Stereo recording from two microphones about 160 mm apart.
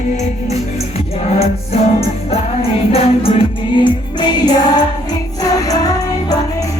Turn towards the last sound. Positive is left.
turn(degrees=20)  # may be behind; listen again after turning